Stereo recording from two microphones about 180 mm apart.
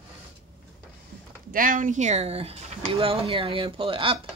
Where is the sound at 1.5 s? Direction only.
50° right (ahead or behind); by 4.2 s 30° right (ahead or behind).